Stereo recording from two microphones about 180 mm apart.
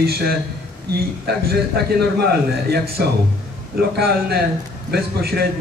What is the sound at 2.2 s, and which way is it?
A man's voice, 60° right (ahead or behind).